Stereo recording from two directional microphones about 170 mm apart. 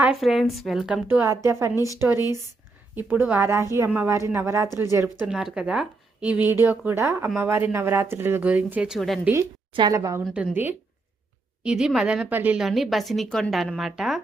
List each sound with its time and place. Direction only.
0.0 s a woman's voice: centre (ahead or behind)
1.0 s a woman's voice: 15° right (ahead or behind)
1.7 s speech: 20° left (ahead or behind)
2.9 s speech: 10° right (ahead or behind)
5.2 s speech: 5° right (ahead or behind)
9.7 s a woman's voice: 25° right (ahead or behind)
10.3 s a woman's voice: 10° right (ahead or behind)